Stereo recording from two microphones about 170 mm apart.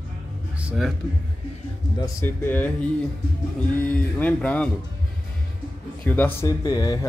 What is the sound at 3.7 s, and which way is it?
Speech, 10° left (ahead or behind).